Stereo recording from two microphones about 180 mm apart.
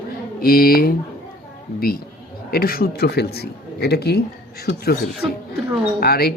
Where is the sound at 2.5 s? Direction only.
55° left (ahead or behind).